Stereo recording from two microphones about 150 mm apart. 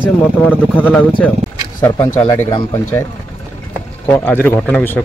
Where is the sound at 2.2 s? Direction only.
30° left (ahead or behind).